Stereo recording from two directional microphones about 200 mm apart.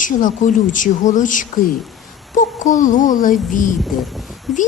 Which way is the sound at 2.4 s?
40° left (ahead or behind).